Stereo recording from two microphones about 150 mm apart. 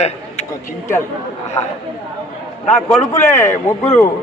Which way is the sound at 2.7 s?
10° left (ahead or behind).